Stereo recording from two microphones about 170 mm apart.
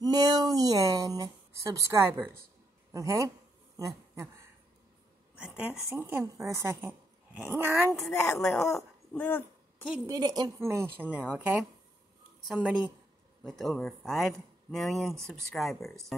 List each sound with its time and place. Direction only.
0.0 s a sound: 25° right (ahead or behind)
2.9 s a man's voice: 20° right (ahead or behind)
5.4 s a woman's voice: 5° right (ahead or behind)
8.4 s speech: 5° left (ahead or behind)
9.1 s dog: 10° left (ahead or behind)
10.0 s a woman's voice: 20° right (ahead or behind); by 15.9 s centre (ahead or behind)